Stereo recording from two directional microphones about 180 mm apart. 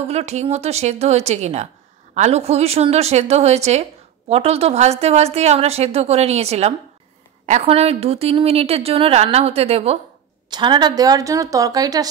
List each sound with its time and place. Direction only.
0.0 s a woman's voice: 35° right (ahead or behind); by 12.1 s 20° right (ahead or behind)